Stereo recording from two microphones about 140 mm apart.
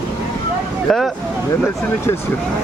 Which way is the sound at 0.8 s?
Centre (ahead or behind).